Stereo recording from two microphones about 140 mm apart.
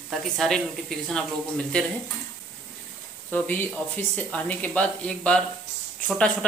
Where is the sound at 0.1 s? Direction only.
Centre (ahead or behind).